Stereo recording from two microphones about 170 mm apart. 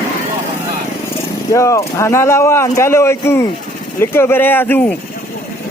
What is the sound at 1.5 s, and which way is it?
Speech, 20° left (ahead or behind).